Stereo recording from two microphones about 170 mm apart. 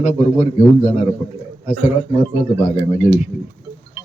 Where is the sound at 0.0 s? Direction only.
40° left (ahead or behind).